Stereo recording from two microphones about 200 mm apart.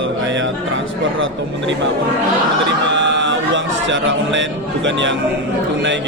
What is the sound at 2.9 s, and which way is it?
Music, 65° right (ahead or behind).